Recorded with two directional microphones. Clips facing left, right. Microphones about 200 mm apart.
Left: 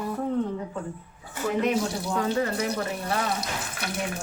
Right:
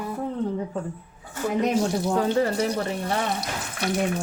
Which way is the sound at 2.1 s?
35° right (ahead or behind).